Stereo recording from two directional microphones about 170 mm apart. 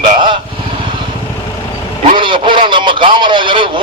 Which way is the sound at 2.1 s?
30° right (ahead or behind).